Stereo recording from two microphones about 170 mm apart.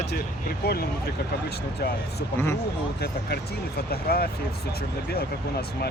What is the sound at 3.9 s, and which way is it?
Speech, 65° left (ahead or behind).